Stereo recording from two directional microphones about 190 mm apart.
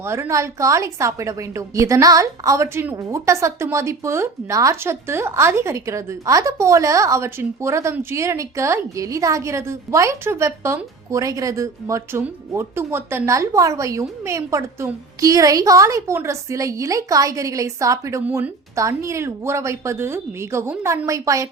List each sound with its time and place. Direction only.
0.0 s a woman's voice: 15° right (ahead or behind)